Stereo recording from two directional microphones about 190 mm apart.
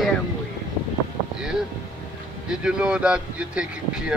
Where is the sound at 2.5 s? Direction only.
5° right (ahead or behind).